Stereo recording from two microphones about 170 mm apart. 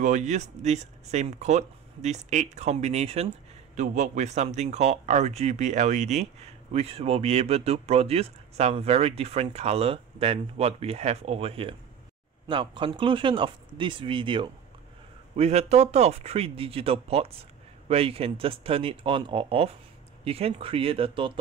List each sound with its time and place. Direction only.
0.0 s speech: 45° right (ahead or behind)
15.3 s speech: 40° right (ahead or behind)